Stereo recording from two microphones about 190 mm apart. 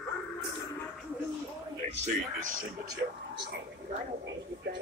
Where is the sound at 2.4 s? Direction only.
90° right.